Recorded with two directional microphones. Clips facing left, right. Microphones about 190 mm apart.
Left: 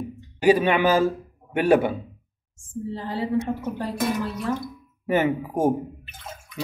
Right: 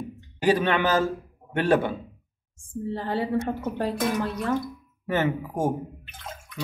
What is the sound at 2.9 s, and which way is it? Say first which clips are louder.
A woman's voice: even; 60° right (ahead or behind).